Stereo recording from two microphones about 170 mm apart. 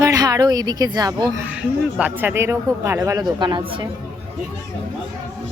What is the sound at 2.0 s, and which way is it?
A man's voice, 10° right (ahead or behind).